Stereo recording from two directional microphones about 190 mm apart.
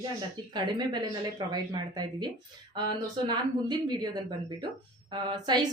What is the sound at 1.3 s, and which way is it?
A woman's voice, 20° right (ahead or behind).